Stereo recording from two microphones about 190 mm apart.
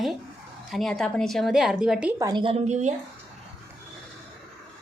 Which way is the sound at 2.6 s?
40° right (ahead or behind).